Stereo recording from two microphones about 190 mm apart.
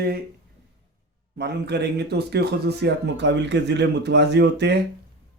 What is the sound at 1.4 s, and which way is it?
Speech, 60° right (ahead or behind).